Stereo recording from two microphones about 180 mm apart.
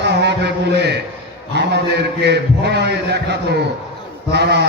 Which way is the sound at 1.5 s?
70° right (ahead or behind).